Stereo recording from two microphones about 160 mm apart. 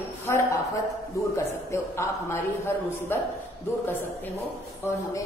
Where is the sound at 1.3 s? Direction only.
15° left (ahead or behind).